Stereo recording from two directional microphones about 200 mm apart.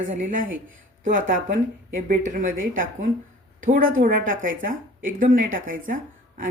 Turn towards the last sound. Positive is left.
turn(degrees=-40)  # may be behind; listen again after turning